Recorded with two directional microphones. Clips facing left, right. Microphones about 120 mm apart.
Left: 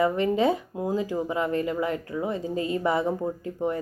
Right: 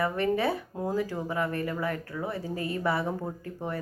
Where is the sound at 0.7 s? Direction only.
5° left (ahead or behind).